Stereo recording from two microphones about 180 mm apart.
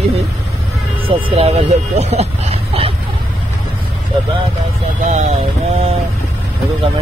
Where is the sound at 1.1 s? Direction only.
30° right (ahead or behind).